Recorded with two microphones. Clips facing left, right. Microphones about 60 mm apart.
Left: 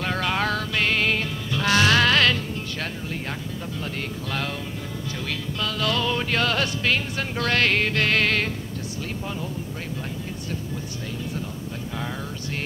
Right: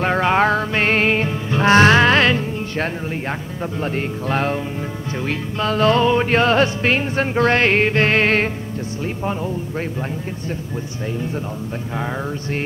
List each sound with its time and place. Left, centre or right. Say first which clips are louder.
0.0 s music: right 8 dB; right